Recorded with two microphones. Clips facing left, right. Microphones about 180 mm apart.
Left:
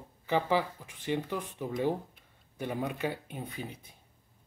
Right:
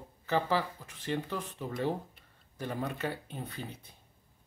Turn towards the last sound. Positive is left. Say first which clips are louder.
# left 1 dB
turn(degrees=10)  # may be behind; listen again after turning